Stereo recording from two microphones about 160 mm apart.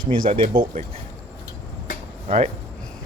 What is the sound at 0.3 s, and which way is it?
Speech, 35° right (ahead or behind).